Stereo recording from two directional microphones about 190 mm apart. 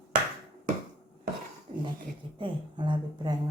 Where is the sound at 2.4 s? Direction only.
25° right (ahead or behind).